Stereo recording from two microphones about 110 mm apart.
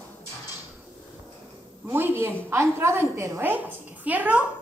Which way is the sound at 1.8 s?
20° right (ahead or behind).